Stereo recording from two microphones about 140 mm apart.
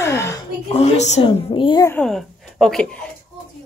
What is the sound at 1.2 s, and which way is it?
Speech, 35° left (ahead or behind).